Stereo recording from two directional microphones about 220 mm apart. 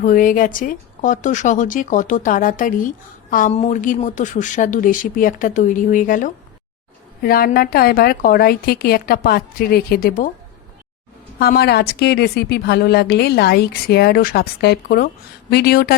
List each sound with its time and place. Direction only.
0.0 s speech: 40° left (ahead or behind)
11.3 s speech: 45° left (ahead or behind)